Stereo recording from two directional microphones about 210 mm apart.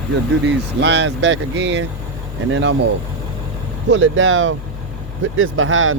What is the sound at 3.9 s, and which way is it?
Speech, 65° right (ahead or behind).